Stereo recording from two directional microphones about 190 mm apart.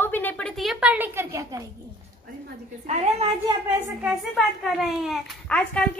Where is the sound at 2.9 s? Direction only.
35° right (ahead or behind).